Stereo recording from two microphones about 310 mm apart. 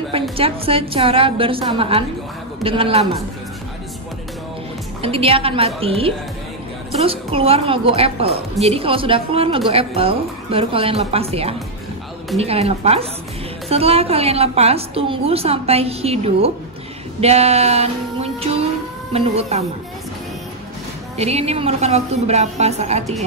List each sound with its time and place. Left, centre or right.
0.4 s a woman's voice: centre
5.0 s a woman's voice: centre
17.2 s music: centre
19.1 s a woman's voice: centre
21.2 s a woman's voice: centre